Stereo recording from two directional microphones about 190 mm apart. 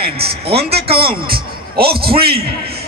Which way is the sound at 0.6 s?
60° right (ahead or behind).